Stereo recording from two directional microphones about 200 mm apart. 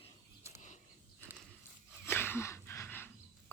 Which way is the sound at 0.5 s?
40° left (ahead or behind).